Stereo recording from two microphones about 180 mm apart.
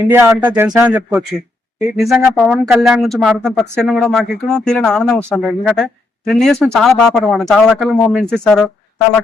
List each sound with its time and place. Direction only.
0.1 s speech: 10° right (ahead or behind)